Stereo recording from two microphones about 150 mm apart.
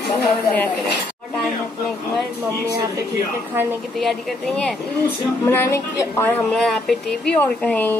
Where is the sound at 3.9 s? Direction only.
5° left (ahead or behind).